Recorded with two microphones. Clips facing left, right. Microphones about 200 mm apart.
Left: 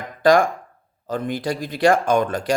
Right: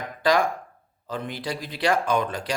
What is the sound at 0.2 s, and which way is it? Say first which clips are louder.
A man's voice: left 6 dB; 50° left (ahead or behind).